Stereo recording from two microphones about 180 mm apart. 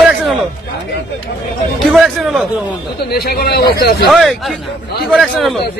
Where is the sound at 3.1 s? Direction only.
60° left (ahead or behind).